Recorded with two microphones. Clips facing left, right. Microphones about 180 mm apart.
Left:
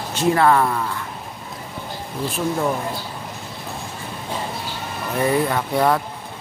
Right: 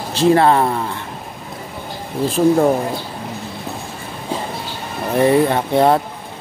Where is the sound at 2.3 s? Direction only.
35° right (ahead or behind).